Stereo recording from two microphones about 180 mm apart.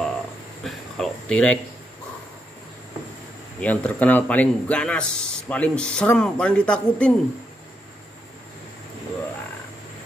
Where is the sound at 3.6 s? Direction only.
10° left (ahead or behind).